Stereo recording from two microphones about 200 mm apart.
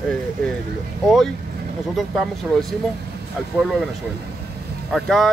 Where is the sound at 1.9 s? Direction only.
Centre (ahead or behind).